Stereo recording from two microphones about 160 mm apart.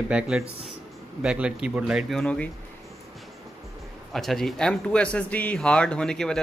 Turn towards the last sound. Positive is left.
turn(degrees=5)  # may be behind; listen again after turning